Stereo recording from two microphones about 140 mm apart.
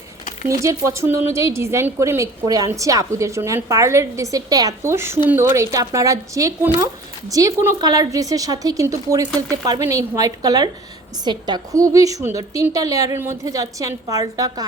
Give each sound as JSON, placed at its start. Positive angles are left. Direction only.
{"t": 0.6, "sound": "a woman's voice", "side_deg": -20}